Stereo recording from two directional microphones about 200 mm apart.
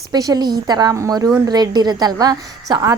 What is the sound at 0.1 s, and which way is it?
A woman's voice, 20° right (ahead or behind).